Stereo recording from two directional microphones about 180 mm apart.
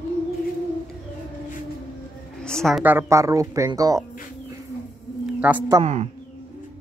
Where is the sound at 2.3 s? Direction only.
5° left (ahead or behind).